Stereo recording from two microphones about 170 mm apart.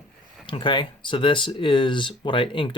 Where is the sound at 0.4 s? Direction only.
30° left (ahead or behind).